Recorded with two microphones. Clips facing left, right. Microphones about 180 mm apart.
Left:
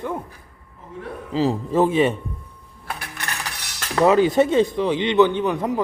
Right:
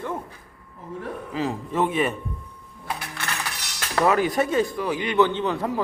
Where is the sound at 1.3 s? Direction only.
30° left (ahead or behind).